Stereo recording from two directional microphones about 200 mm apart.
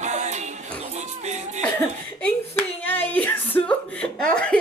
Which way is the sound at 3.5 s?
5° left (ahead or behind).